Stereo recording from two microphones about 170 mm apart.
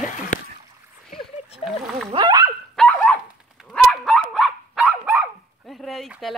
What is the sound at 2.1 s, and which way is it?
Speech, 25° right (ahead or behind).